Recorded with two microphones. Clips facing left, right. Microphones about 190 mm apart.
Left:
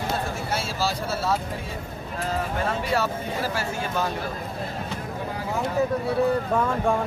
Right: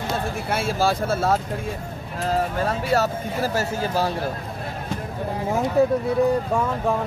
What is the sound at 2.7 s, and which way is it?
A man's voice, 40° right (ahead or behind).